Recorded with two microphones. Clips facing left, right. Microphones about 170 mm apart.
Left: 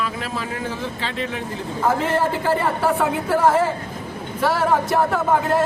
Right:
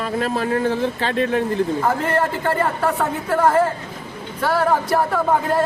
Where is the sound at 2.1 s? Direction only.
Centre (ahead or behind).